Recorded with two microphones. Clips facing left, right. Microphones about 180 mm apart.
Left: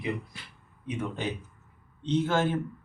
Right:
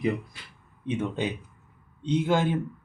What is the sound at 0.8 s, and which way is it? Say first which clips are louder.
A man's voice: right 4 dB; 25° right (ahead or behind).